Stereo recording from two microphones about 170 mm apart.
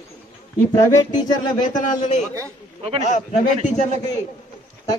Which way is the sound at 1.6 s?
45° left (ahead or behind).